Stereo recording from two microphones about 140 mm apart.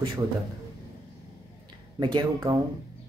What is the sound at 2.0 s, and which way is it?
Speech, 30° right (ahead or behind).